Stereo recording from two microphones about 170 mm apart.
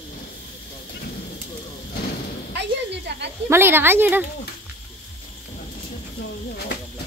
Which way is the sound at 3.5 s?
15° right (ahead or behind).